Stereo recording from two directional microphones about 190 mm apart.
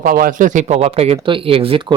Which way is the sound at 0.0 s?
45° right (ahead or behind).